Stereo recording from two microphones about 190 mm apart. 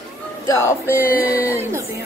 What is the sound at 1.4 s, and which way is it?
Speech, 10° right (ahead or behind).